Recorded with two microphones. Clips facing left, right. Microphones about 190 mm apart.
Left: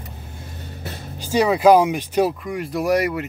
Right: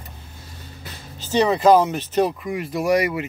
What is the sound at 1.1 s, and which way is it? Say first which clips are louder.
Speech: even; 10° left (ahead or behind).